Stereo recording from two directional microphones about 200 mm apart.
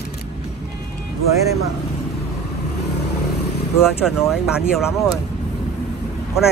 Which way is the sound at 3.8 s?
Centre (ahead or behind).